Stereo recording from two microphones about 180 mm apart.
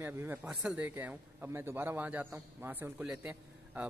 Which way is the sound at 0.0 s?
10° right (ahead or behind).